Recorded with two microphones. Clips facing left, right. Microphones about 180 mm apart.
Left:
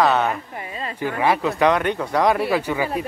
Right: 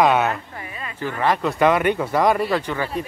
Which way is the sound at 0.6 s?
30° left (ahead or behind).